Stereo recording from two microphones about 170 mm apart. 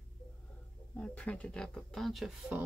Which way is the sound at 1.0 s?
10° left (ahead or behind).